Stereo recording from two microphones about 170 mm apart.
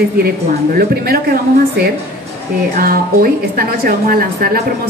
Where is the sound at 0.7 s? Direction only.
65° right (ahead or behind).